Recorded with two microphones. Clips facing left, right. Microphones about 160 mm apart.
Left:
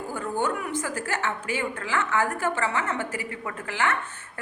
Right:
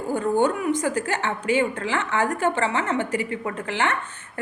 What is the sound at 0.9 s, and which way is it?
A woman's voice, 20° right (ahead or behind).